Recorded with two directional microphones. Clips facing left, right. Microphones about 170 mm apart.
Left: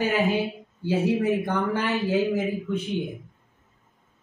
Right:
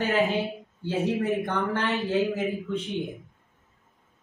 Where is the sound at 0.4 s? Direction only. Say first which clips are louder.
Left 2 dB; 10° left (ahead or behind).